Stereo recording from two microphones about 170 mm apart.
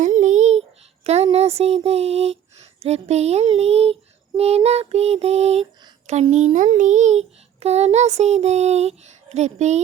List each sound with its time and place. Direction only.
0.0 s child singing: 45° right (ahead or behind)
1.0 s a child's voice: 40° right (ahead or behind)